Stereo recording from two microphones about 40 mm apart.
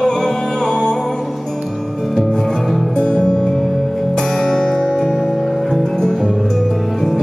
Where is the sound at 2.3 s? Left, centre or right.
Centre.